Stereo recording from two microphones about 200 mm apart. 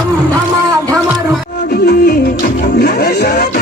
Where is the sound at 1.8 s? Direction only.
55° left (ahead or behind).